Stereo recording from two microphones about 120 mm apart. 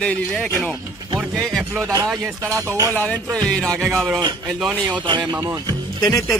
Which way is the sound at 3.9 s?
Centre (ahead or behind).